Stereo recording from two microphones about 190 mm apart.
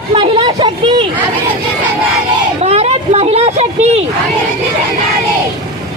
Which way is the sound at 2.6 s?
35° right (ahead or behind).